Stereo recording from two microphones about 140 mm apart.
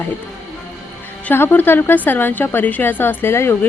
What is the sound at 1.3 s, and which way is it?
A woman's voice, 15° left (ahead or behind).